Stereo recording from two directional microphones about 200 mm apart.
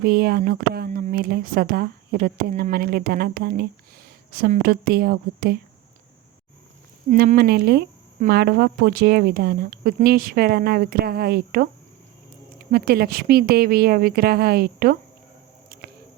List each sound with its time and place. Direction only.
0.0 s speech: 50° right (ahead or behind)
7.1 s speech: 45° right (ahead or behind)
12.7 s speech: 50° right (ahead or behind)
15.7 s a sound: 45° right (ahead or behind)